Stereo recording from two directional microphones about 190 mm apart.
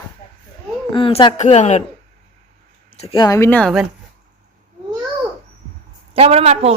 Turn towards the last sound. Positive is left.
turn(degrees=-35)  # may be behind; listen again after turning